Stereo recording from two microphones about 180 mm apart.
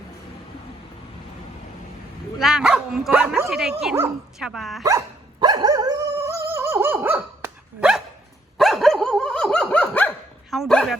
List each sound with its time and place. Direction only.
2.4 s speech: 5° right (ahead or behind)
4.8 s dog: 20° right (ahead or behind); by 10.9 s 5° left (ahead or behind)